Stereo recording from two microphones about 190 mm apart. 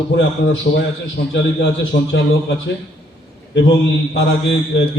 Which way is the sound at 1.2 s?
70° left (ahead or behind).